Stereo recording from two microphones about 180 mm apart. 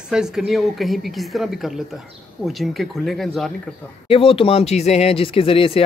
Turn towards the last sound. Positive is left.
turn(degrees=30)  # may be behind; listen again after turning